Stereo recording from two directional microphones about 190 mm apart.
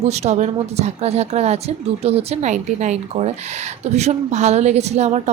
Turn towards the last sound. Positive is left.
turn(degrees=-35)  # may be behind; listen again after turning